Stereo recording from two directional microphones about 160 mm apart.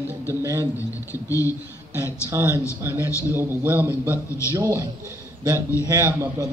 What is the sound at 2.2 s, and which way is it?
A man's voice, 15° right (ahead or behind).